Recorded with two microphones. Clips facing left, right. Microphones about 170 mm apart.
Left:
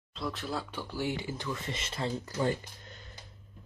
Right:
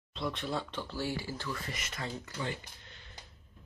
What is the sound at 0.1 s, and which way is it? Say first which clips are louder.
Speech: even; centre (ahead or behind).